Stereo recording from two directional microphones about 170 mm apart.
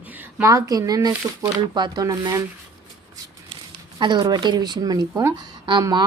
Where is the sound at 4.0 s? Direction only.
25° right (ahead or behind).